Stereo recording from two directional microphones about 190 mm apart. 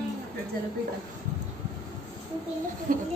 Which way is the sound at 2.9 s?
45° right (ahead or behind).